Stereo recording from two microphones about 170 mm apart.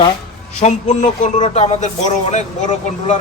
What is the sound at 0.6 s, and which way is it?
Speech, 40° left (ahead or behind).